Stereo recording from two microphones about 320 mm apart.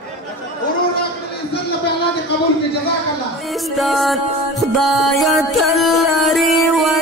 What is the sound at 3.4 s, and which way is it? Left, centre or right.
Music, centre.